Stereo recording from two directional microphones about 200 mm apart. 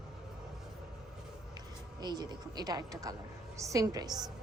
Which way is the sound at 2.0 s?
20° right (ahead or behind).